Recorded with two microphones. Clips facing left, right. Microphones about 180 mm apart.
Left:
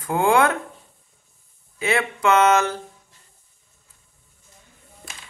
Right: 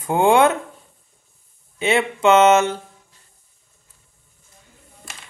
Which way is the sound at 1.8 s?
25° right (ahead or behind).